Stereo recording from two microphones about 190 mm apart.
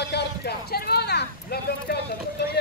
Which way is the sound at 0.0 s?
60° left (ahead or behind).